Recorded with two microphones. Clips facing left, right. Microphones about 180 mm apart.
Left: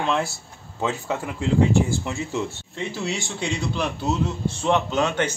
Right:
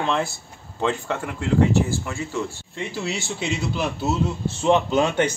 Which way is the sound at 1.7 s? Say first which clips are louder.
Left 1 dB; 15° left (ahead or behind).